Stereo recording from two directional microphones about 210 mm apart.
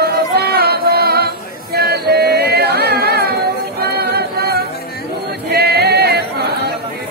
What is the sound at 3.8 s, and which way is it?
Singing, 50° right (ahead or behind).